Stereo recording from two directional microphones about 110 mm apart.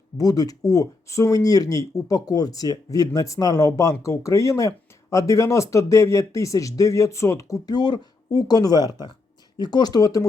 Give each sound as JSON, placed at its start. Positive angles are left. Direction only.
{"t": 0.2, "sound": "speech", "side_deg": 35}